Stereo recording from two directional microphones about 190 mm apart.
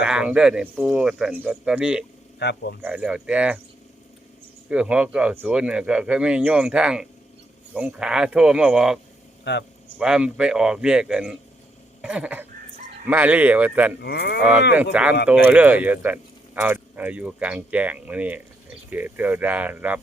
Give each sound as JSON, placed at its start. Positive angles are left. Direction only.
{"t": 0.0, "sound": "speech", "side_deg": -5}
{"t": 2.4, "sound": "speech", "side_deg": 60}
{"t": 2.8, "sound": "speech", "side_deg": -5}
{"t": 4.7, "sound": "speech", "side_deg": -5}
{"t": 9.4, "sound": "a man's voice", "side_deg": 65}
{"t": 10.0, "sound": "speech", "side_deg": -5}
{"t": 12.0, "sound": "a sound", "side_deg": -5}
{"t": 13.1, "sound": "speech", "side_deg": -10}
{"t": 14.0, "sound": "speech", "side_deg": 60}
{"t": 14.9, "sound": "speech", "side_deg": -10}